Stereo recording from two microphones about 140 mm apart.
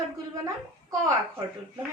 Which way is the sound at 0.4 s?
20° right (ahead or behind).